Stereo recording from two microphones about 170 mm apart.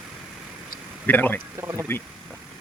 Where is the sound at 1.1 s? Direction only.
10° left (ahead or behind).